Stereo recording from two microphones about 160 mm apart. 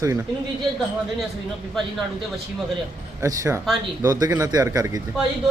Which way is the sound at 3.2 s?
20° right (ahead or behind).